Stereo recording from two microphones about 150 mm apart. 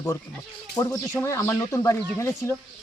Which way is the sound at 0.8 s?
25° left (ahead or behind).